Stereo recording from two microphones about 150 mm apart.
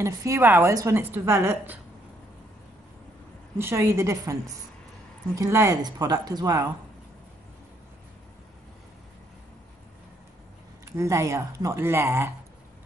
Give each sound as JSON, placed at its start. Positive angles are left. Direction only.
{"t": 0.0, "sound": "a woman's voice", "side_deg": -20}
{"t": 3.5, "sound": "speech", "side_deg": -15}
{"t": 10.9, "sound": "speech", "side_deg": -20}